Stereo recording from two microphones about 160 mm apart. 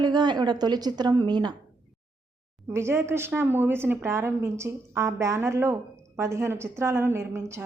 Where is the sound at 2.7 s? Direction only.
15° right (ahead or behind).